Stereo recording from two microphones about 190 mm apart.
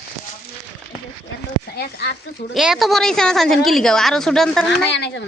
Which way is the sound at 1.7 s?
55° left (ahead or behind).